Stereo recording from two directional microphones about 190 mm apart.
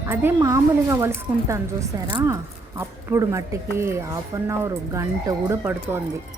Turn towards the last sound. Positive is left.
turn(degrees=-15)  # may be behind; listen again after turning